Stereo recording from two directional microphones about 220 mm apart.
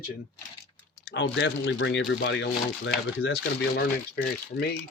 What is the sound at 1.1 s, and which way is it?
Speech, 55° left (ahead or behind).